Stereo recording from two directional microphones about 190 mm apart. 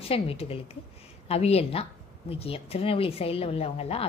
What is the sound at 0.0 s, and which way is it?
A woman's voice, 30° left (ahead or behind).